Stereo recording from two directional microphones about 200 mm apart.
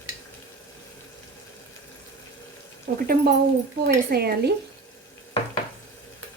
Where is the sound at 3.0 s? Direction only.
50° right (ahead or behind).